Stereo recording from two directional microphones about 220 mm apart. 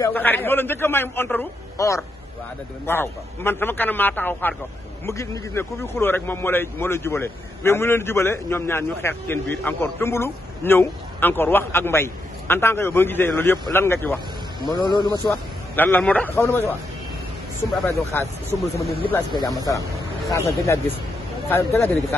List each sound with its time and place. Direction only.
0.0 s a man's voice: 10° left (ahead or behind)
15.2 s a man's voice: 10° left (ahead or behind)
18.1 s a man's voice: 10° left (ahead or behind)